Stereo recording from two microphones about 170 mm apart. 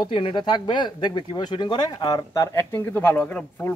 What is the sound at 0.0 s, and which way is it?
Speech, 30° left (ahead or behind).